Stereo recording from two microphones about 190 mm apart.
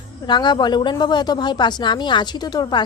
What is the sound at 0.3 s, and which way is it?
Speech, 25° left (ahead or behind).